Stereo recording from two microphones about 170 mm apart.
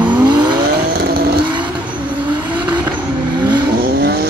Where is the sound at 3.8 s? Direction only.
65° right (ahead or behind).